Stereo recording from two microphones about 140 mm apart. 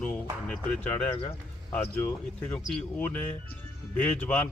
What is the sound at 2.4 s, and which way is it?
Speech, 10° left (ahead or behind).